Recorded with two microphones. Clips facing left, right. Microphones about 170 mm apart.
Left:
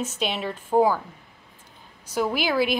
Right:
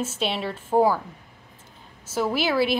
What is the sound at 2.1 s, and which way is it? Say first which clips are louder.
Speech: even; 5° right (ahead or behind).